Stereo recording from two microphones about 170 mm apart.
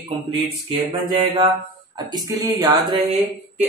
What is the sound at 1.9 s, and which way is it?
Speech, 20° right (ahead or behind).